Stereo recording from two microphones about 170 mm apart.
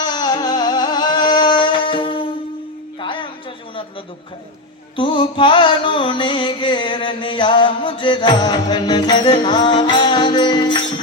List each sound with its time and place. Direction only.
0.0 s music: 25° left (ahead or behind)
4.9 s carnatic music: 30° left (ahead or behind)